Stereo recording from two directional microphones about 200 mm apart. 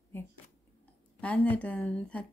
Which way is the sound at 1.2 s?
5° left (ahead or behind).